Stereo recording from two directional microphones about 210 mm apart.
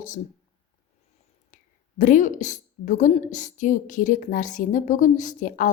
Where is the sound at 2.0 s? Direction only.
35° left (ahead or behind).